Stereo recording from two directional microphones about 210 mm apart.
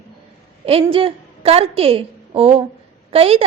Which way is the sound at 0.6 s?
25° right (ahead or behind).